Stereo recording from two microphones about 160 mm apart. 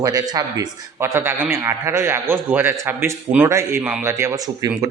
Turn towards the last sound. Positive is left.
turn(degrees=-20)  # may be behind; listen again after turning